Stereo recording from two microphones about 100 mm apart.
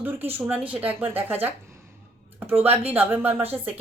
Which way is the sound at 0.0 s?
20° right (ahead or behind).